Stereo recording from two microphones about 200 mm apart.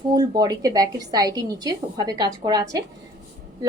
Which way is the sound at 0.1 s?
20° right (ahead or behind).